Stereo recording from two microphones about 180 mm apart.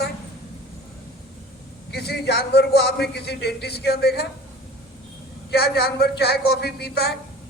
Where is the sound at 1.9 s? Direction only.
65° left (ahead or behind).